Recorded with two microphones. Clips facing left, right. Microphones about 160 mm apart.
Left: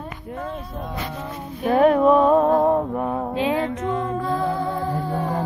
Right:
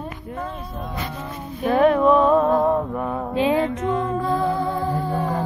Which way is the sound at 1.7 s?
40° left (ahead or behind).